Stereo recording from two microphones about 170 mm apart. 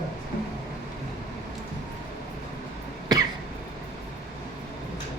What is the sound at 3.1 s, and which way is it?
Cough, 25° right (ahead or behind).